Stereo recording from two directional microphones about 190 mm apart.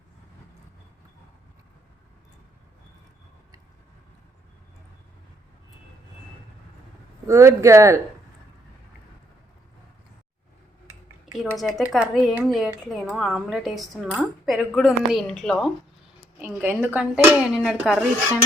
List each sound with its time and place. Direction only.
7.3 s speech: 15° right (ahead or behind)
11.5 s speech: centre (ahead or behind)
16.4 s speech: 10° right (ahead or behind)